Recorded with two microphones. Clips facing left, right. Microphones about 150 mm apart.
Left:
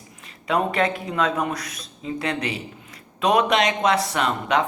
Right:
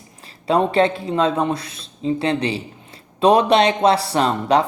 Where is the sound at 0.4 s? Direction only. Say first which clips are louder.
Right 5 dB; 30° right (ahead or behind).